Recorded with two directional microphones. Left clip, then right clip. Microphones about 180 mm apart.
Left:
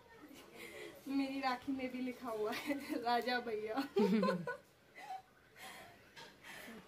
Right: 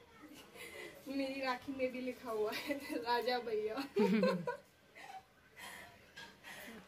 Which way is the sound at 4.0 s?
5° left (ahead or behind).